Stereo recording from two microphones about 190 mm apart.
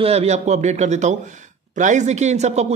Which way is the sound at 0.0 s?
35° right (ahead or behind).